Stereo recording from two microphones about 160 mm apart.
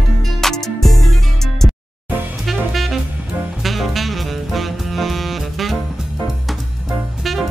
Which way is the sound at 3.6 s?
Centre (ahead or behind).